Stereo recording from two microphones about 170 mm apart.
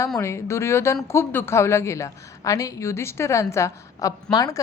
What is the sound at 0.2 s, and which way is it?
A woman's voice, 15° left (ahead or behind).